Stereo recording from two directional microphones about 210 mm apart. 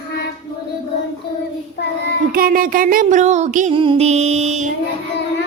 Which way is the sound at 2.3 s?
45° right (ahead or behind).